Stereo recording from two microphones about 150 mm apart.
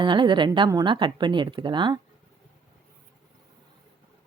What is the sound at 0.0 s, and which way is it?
Speech, 30° right (ahead or behind).